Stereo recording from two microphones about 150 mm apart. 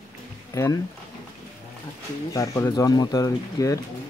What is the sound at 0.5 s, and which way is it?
Speech, 20° left (ahead or behind).